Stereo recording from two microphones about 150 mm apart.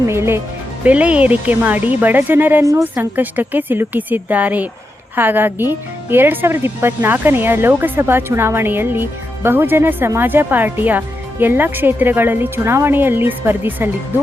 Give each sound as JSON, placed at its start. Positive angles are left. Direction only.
{"t": 0.1, "sound": "speech", "side_deg": -15}